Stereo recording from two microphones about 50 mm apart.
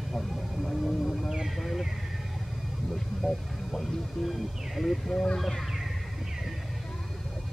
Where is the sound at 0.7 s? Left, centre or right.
Centre.